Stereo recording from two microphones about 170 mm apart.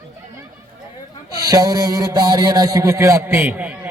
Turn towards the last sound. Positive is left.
turn(degrees=-10)  # may be behind; listen again after turning